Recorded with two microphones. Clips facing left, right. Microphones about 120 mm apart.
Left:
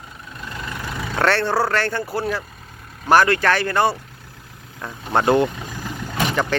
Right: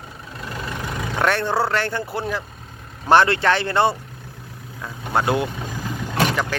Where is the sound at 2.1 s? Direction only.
20° right (ahead or behind).